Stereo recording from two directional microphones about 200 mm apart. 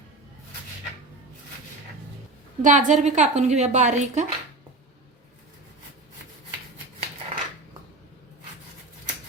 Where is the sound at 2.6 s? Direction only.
40° right (ahead or behind).